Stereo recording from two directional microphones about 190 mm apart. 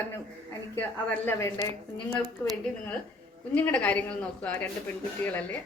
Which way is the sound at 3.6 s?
10° left (ahead or behind).